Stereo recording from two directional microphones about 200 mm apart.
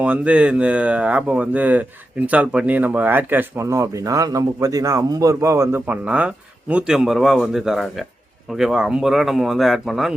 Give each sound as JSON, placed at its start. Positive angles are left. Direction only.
{"t": 0.0, "sound": "speech", "side_deg": -5}